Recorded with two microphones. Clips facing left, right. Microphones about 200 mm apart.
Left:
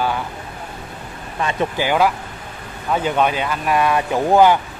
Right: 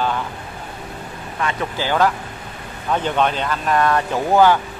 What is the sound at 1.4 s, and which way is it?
Speech, 20° left (ahead or behind).